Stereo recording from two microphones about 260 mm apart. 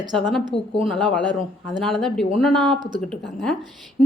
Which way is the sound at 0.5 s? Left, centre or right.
Left.